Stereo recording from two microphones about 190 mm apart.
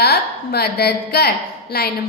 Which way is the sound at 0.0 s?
55° left (ahead or behind).